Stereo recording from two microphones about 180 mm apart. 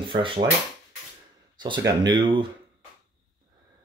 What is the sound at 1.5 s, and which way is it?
Speech, 25° right (ahead or behind).